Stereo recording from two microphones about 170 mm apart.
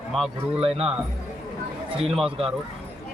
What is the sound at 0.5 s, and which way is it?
Speech, 35° right (ahead or behind).